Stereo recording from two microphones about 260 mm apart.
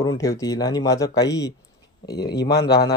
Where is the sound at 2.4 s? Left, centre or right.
Left.